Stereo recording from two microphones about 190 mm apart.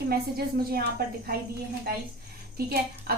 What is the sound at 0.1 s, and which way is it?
A woman's voice, 55° right (ahead or behind).